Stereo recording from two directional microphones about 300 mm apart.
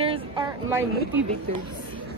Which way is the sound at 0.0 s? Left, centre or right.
Centre.